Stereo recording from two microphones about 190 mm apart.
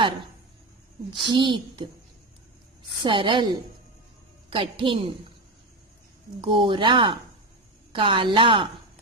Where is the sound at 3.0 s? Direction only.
25° right (ahead or behind).